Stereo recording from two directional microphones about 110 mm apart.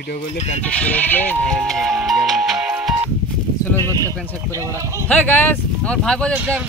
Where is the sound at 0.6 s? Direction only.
15° left (ahead or behind); by 3.1 s 5° right (ahead or behind).